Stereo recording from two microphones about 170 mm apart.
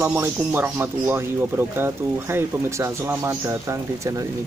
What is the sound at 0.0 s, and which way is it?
Speech, 15° right (ahead or behind).